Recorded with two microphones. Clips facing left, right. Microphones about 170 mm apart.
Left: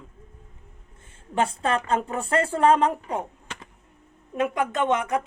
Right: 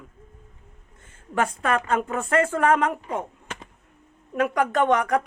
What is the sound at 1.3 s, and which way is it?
Speech, 30° left (ahead or behind).